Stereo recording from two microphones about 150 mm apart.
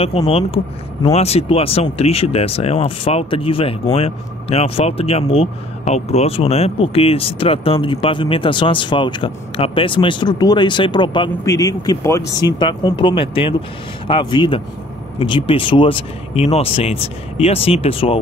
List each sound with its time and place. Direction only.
0.3 s speech: 40° left (ahead or behind); by 12.4 s 20° left (ahead or behind)
12.4 s speech: 30° left (ahead or behind)